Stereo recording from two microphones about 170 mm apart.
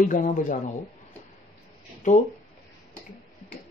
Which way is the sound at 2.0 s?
45° left (ahead or behind).